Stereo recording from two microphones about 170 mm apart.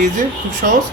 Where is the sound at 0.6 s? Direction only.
60° right (ahead or behind).